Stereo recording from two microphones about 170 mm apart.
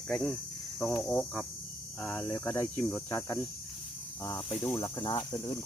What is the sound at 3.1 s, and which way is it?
Speech, 15° left (ahead or behind).